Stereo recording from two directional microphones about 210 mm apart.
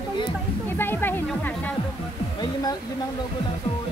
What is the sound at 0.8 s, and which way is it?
Speech, 10° left (ahead or behind).